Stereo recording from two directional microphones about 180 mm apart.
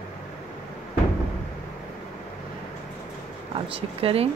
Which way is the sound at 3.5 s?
30° right (ahead or behind).